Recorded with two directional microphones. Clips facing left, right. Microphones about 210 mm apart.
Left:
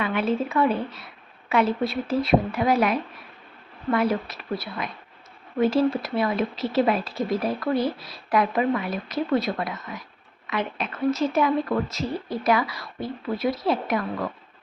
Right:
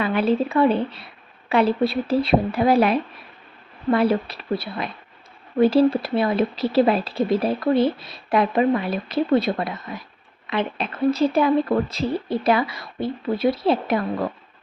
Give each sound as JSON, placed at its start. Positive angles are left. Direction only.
{"t": 0.0, "sound": "speech", "side_deg": -35}